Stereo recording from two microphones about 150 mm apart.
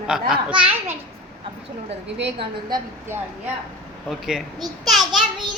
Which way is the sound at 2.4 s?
30° right (ahead or behind).